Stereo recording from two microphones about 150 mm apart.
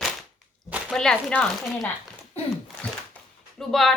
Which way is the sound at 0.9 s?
5° left (ahead or behind).